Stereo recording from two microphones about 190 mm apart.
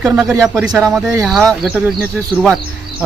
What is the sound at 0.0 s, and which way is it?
Speech, centre (ahead or behind).